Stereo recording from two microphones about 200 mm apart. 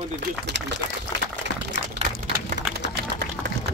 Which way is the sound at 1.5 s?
60° left (ahead or behind).